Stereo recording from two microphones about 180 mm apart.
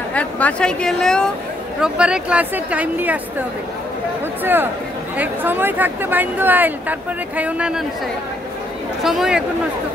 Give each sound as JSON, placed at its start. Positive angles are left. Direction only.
{"t": 0.1, "sound": "speech", "side_deg": 5}
{"t": 5.1, "sound": "speech", "side_deg": -10}
{"t": 9.0, "sound": "speech", "side_deg": 0}